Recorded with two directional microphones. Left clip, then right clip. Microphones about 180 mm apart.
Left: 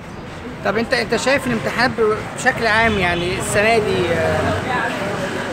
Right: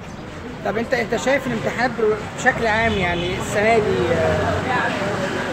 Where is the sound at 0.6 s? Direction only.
20° left (ahead or behind).